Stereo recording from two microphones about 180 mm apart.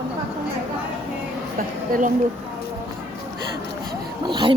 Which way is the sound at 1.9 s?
50° right (ahead or behind).